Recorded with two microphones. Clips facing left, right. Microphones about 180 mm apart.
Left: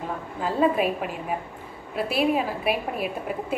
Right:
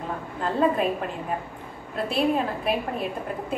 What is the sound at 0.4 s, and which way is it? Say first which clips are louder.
A woman's voice: left 1 dB; 5° left (ahead or behind).